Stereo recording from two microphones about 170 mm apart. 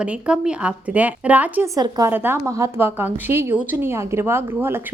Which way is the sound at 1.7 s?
20° right (ahead or behind).